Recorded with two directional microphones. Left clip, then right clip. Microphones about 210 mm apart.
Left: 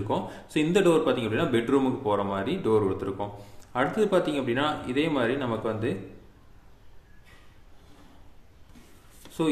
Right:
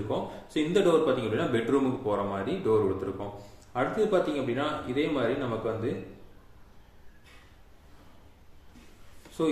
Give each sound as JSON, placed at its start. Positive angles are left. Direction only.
{"t": 0.1, "sound": "a man's voice", "side_deg": 40}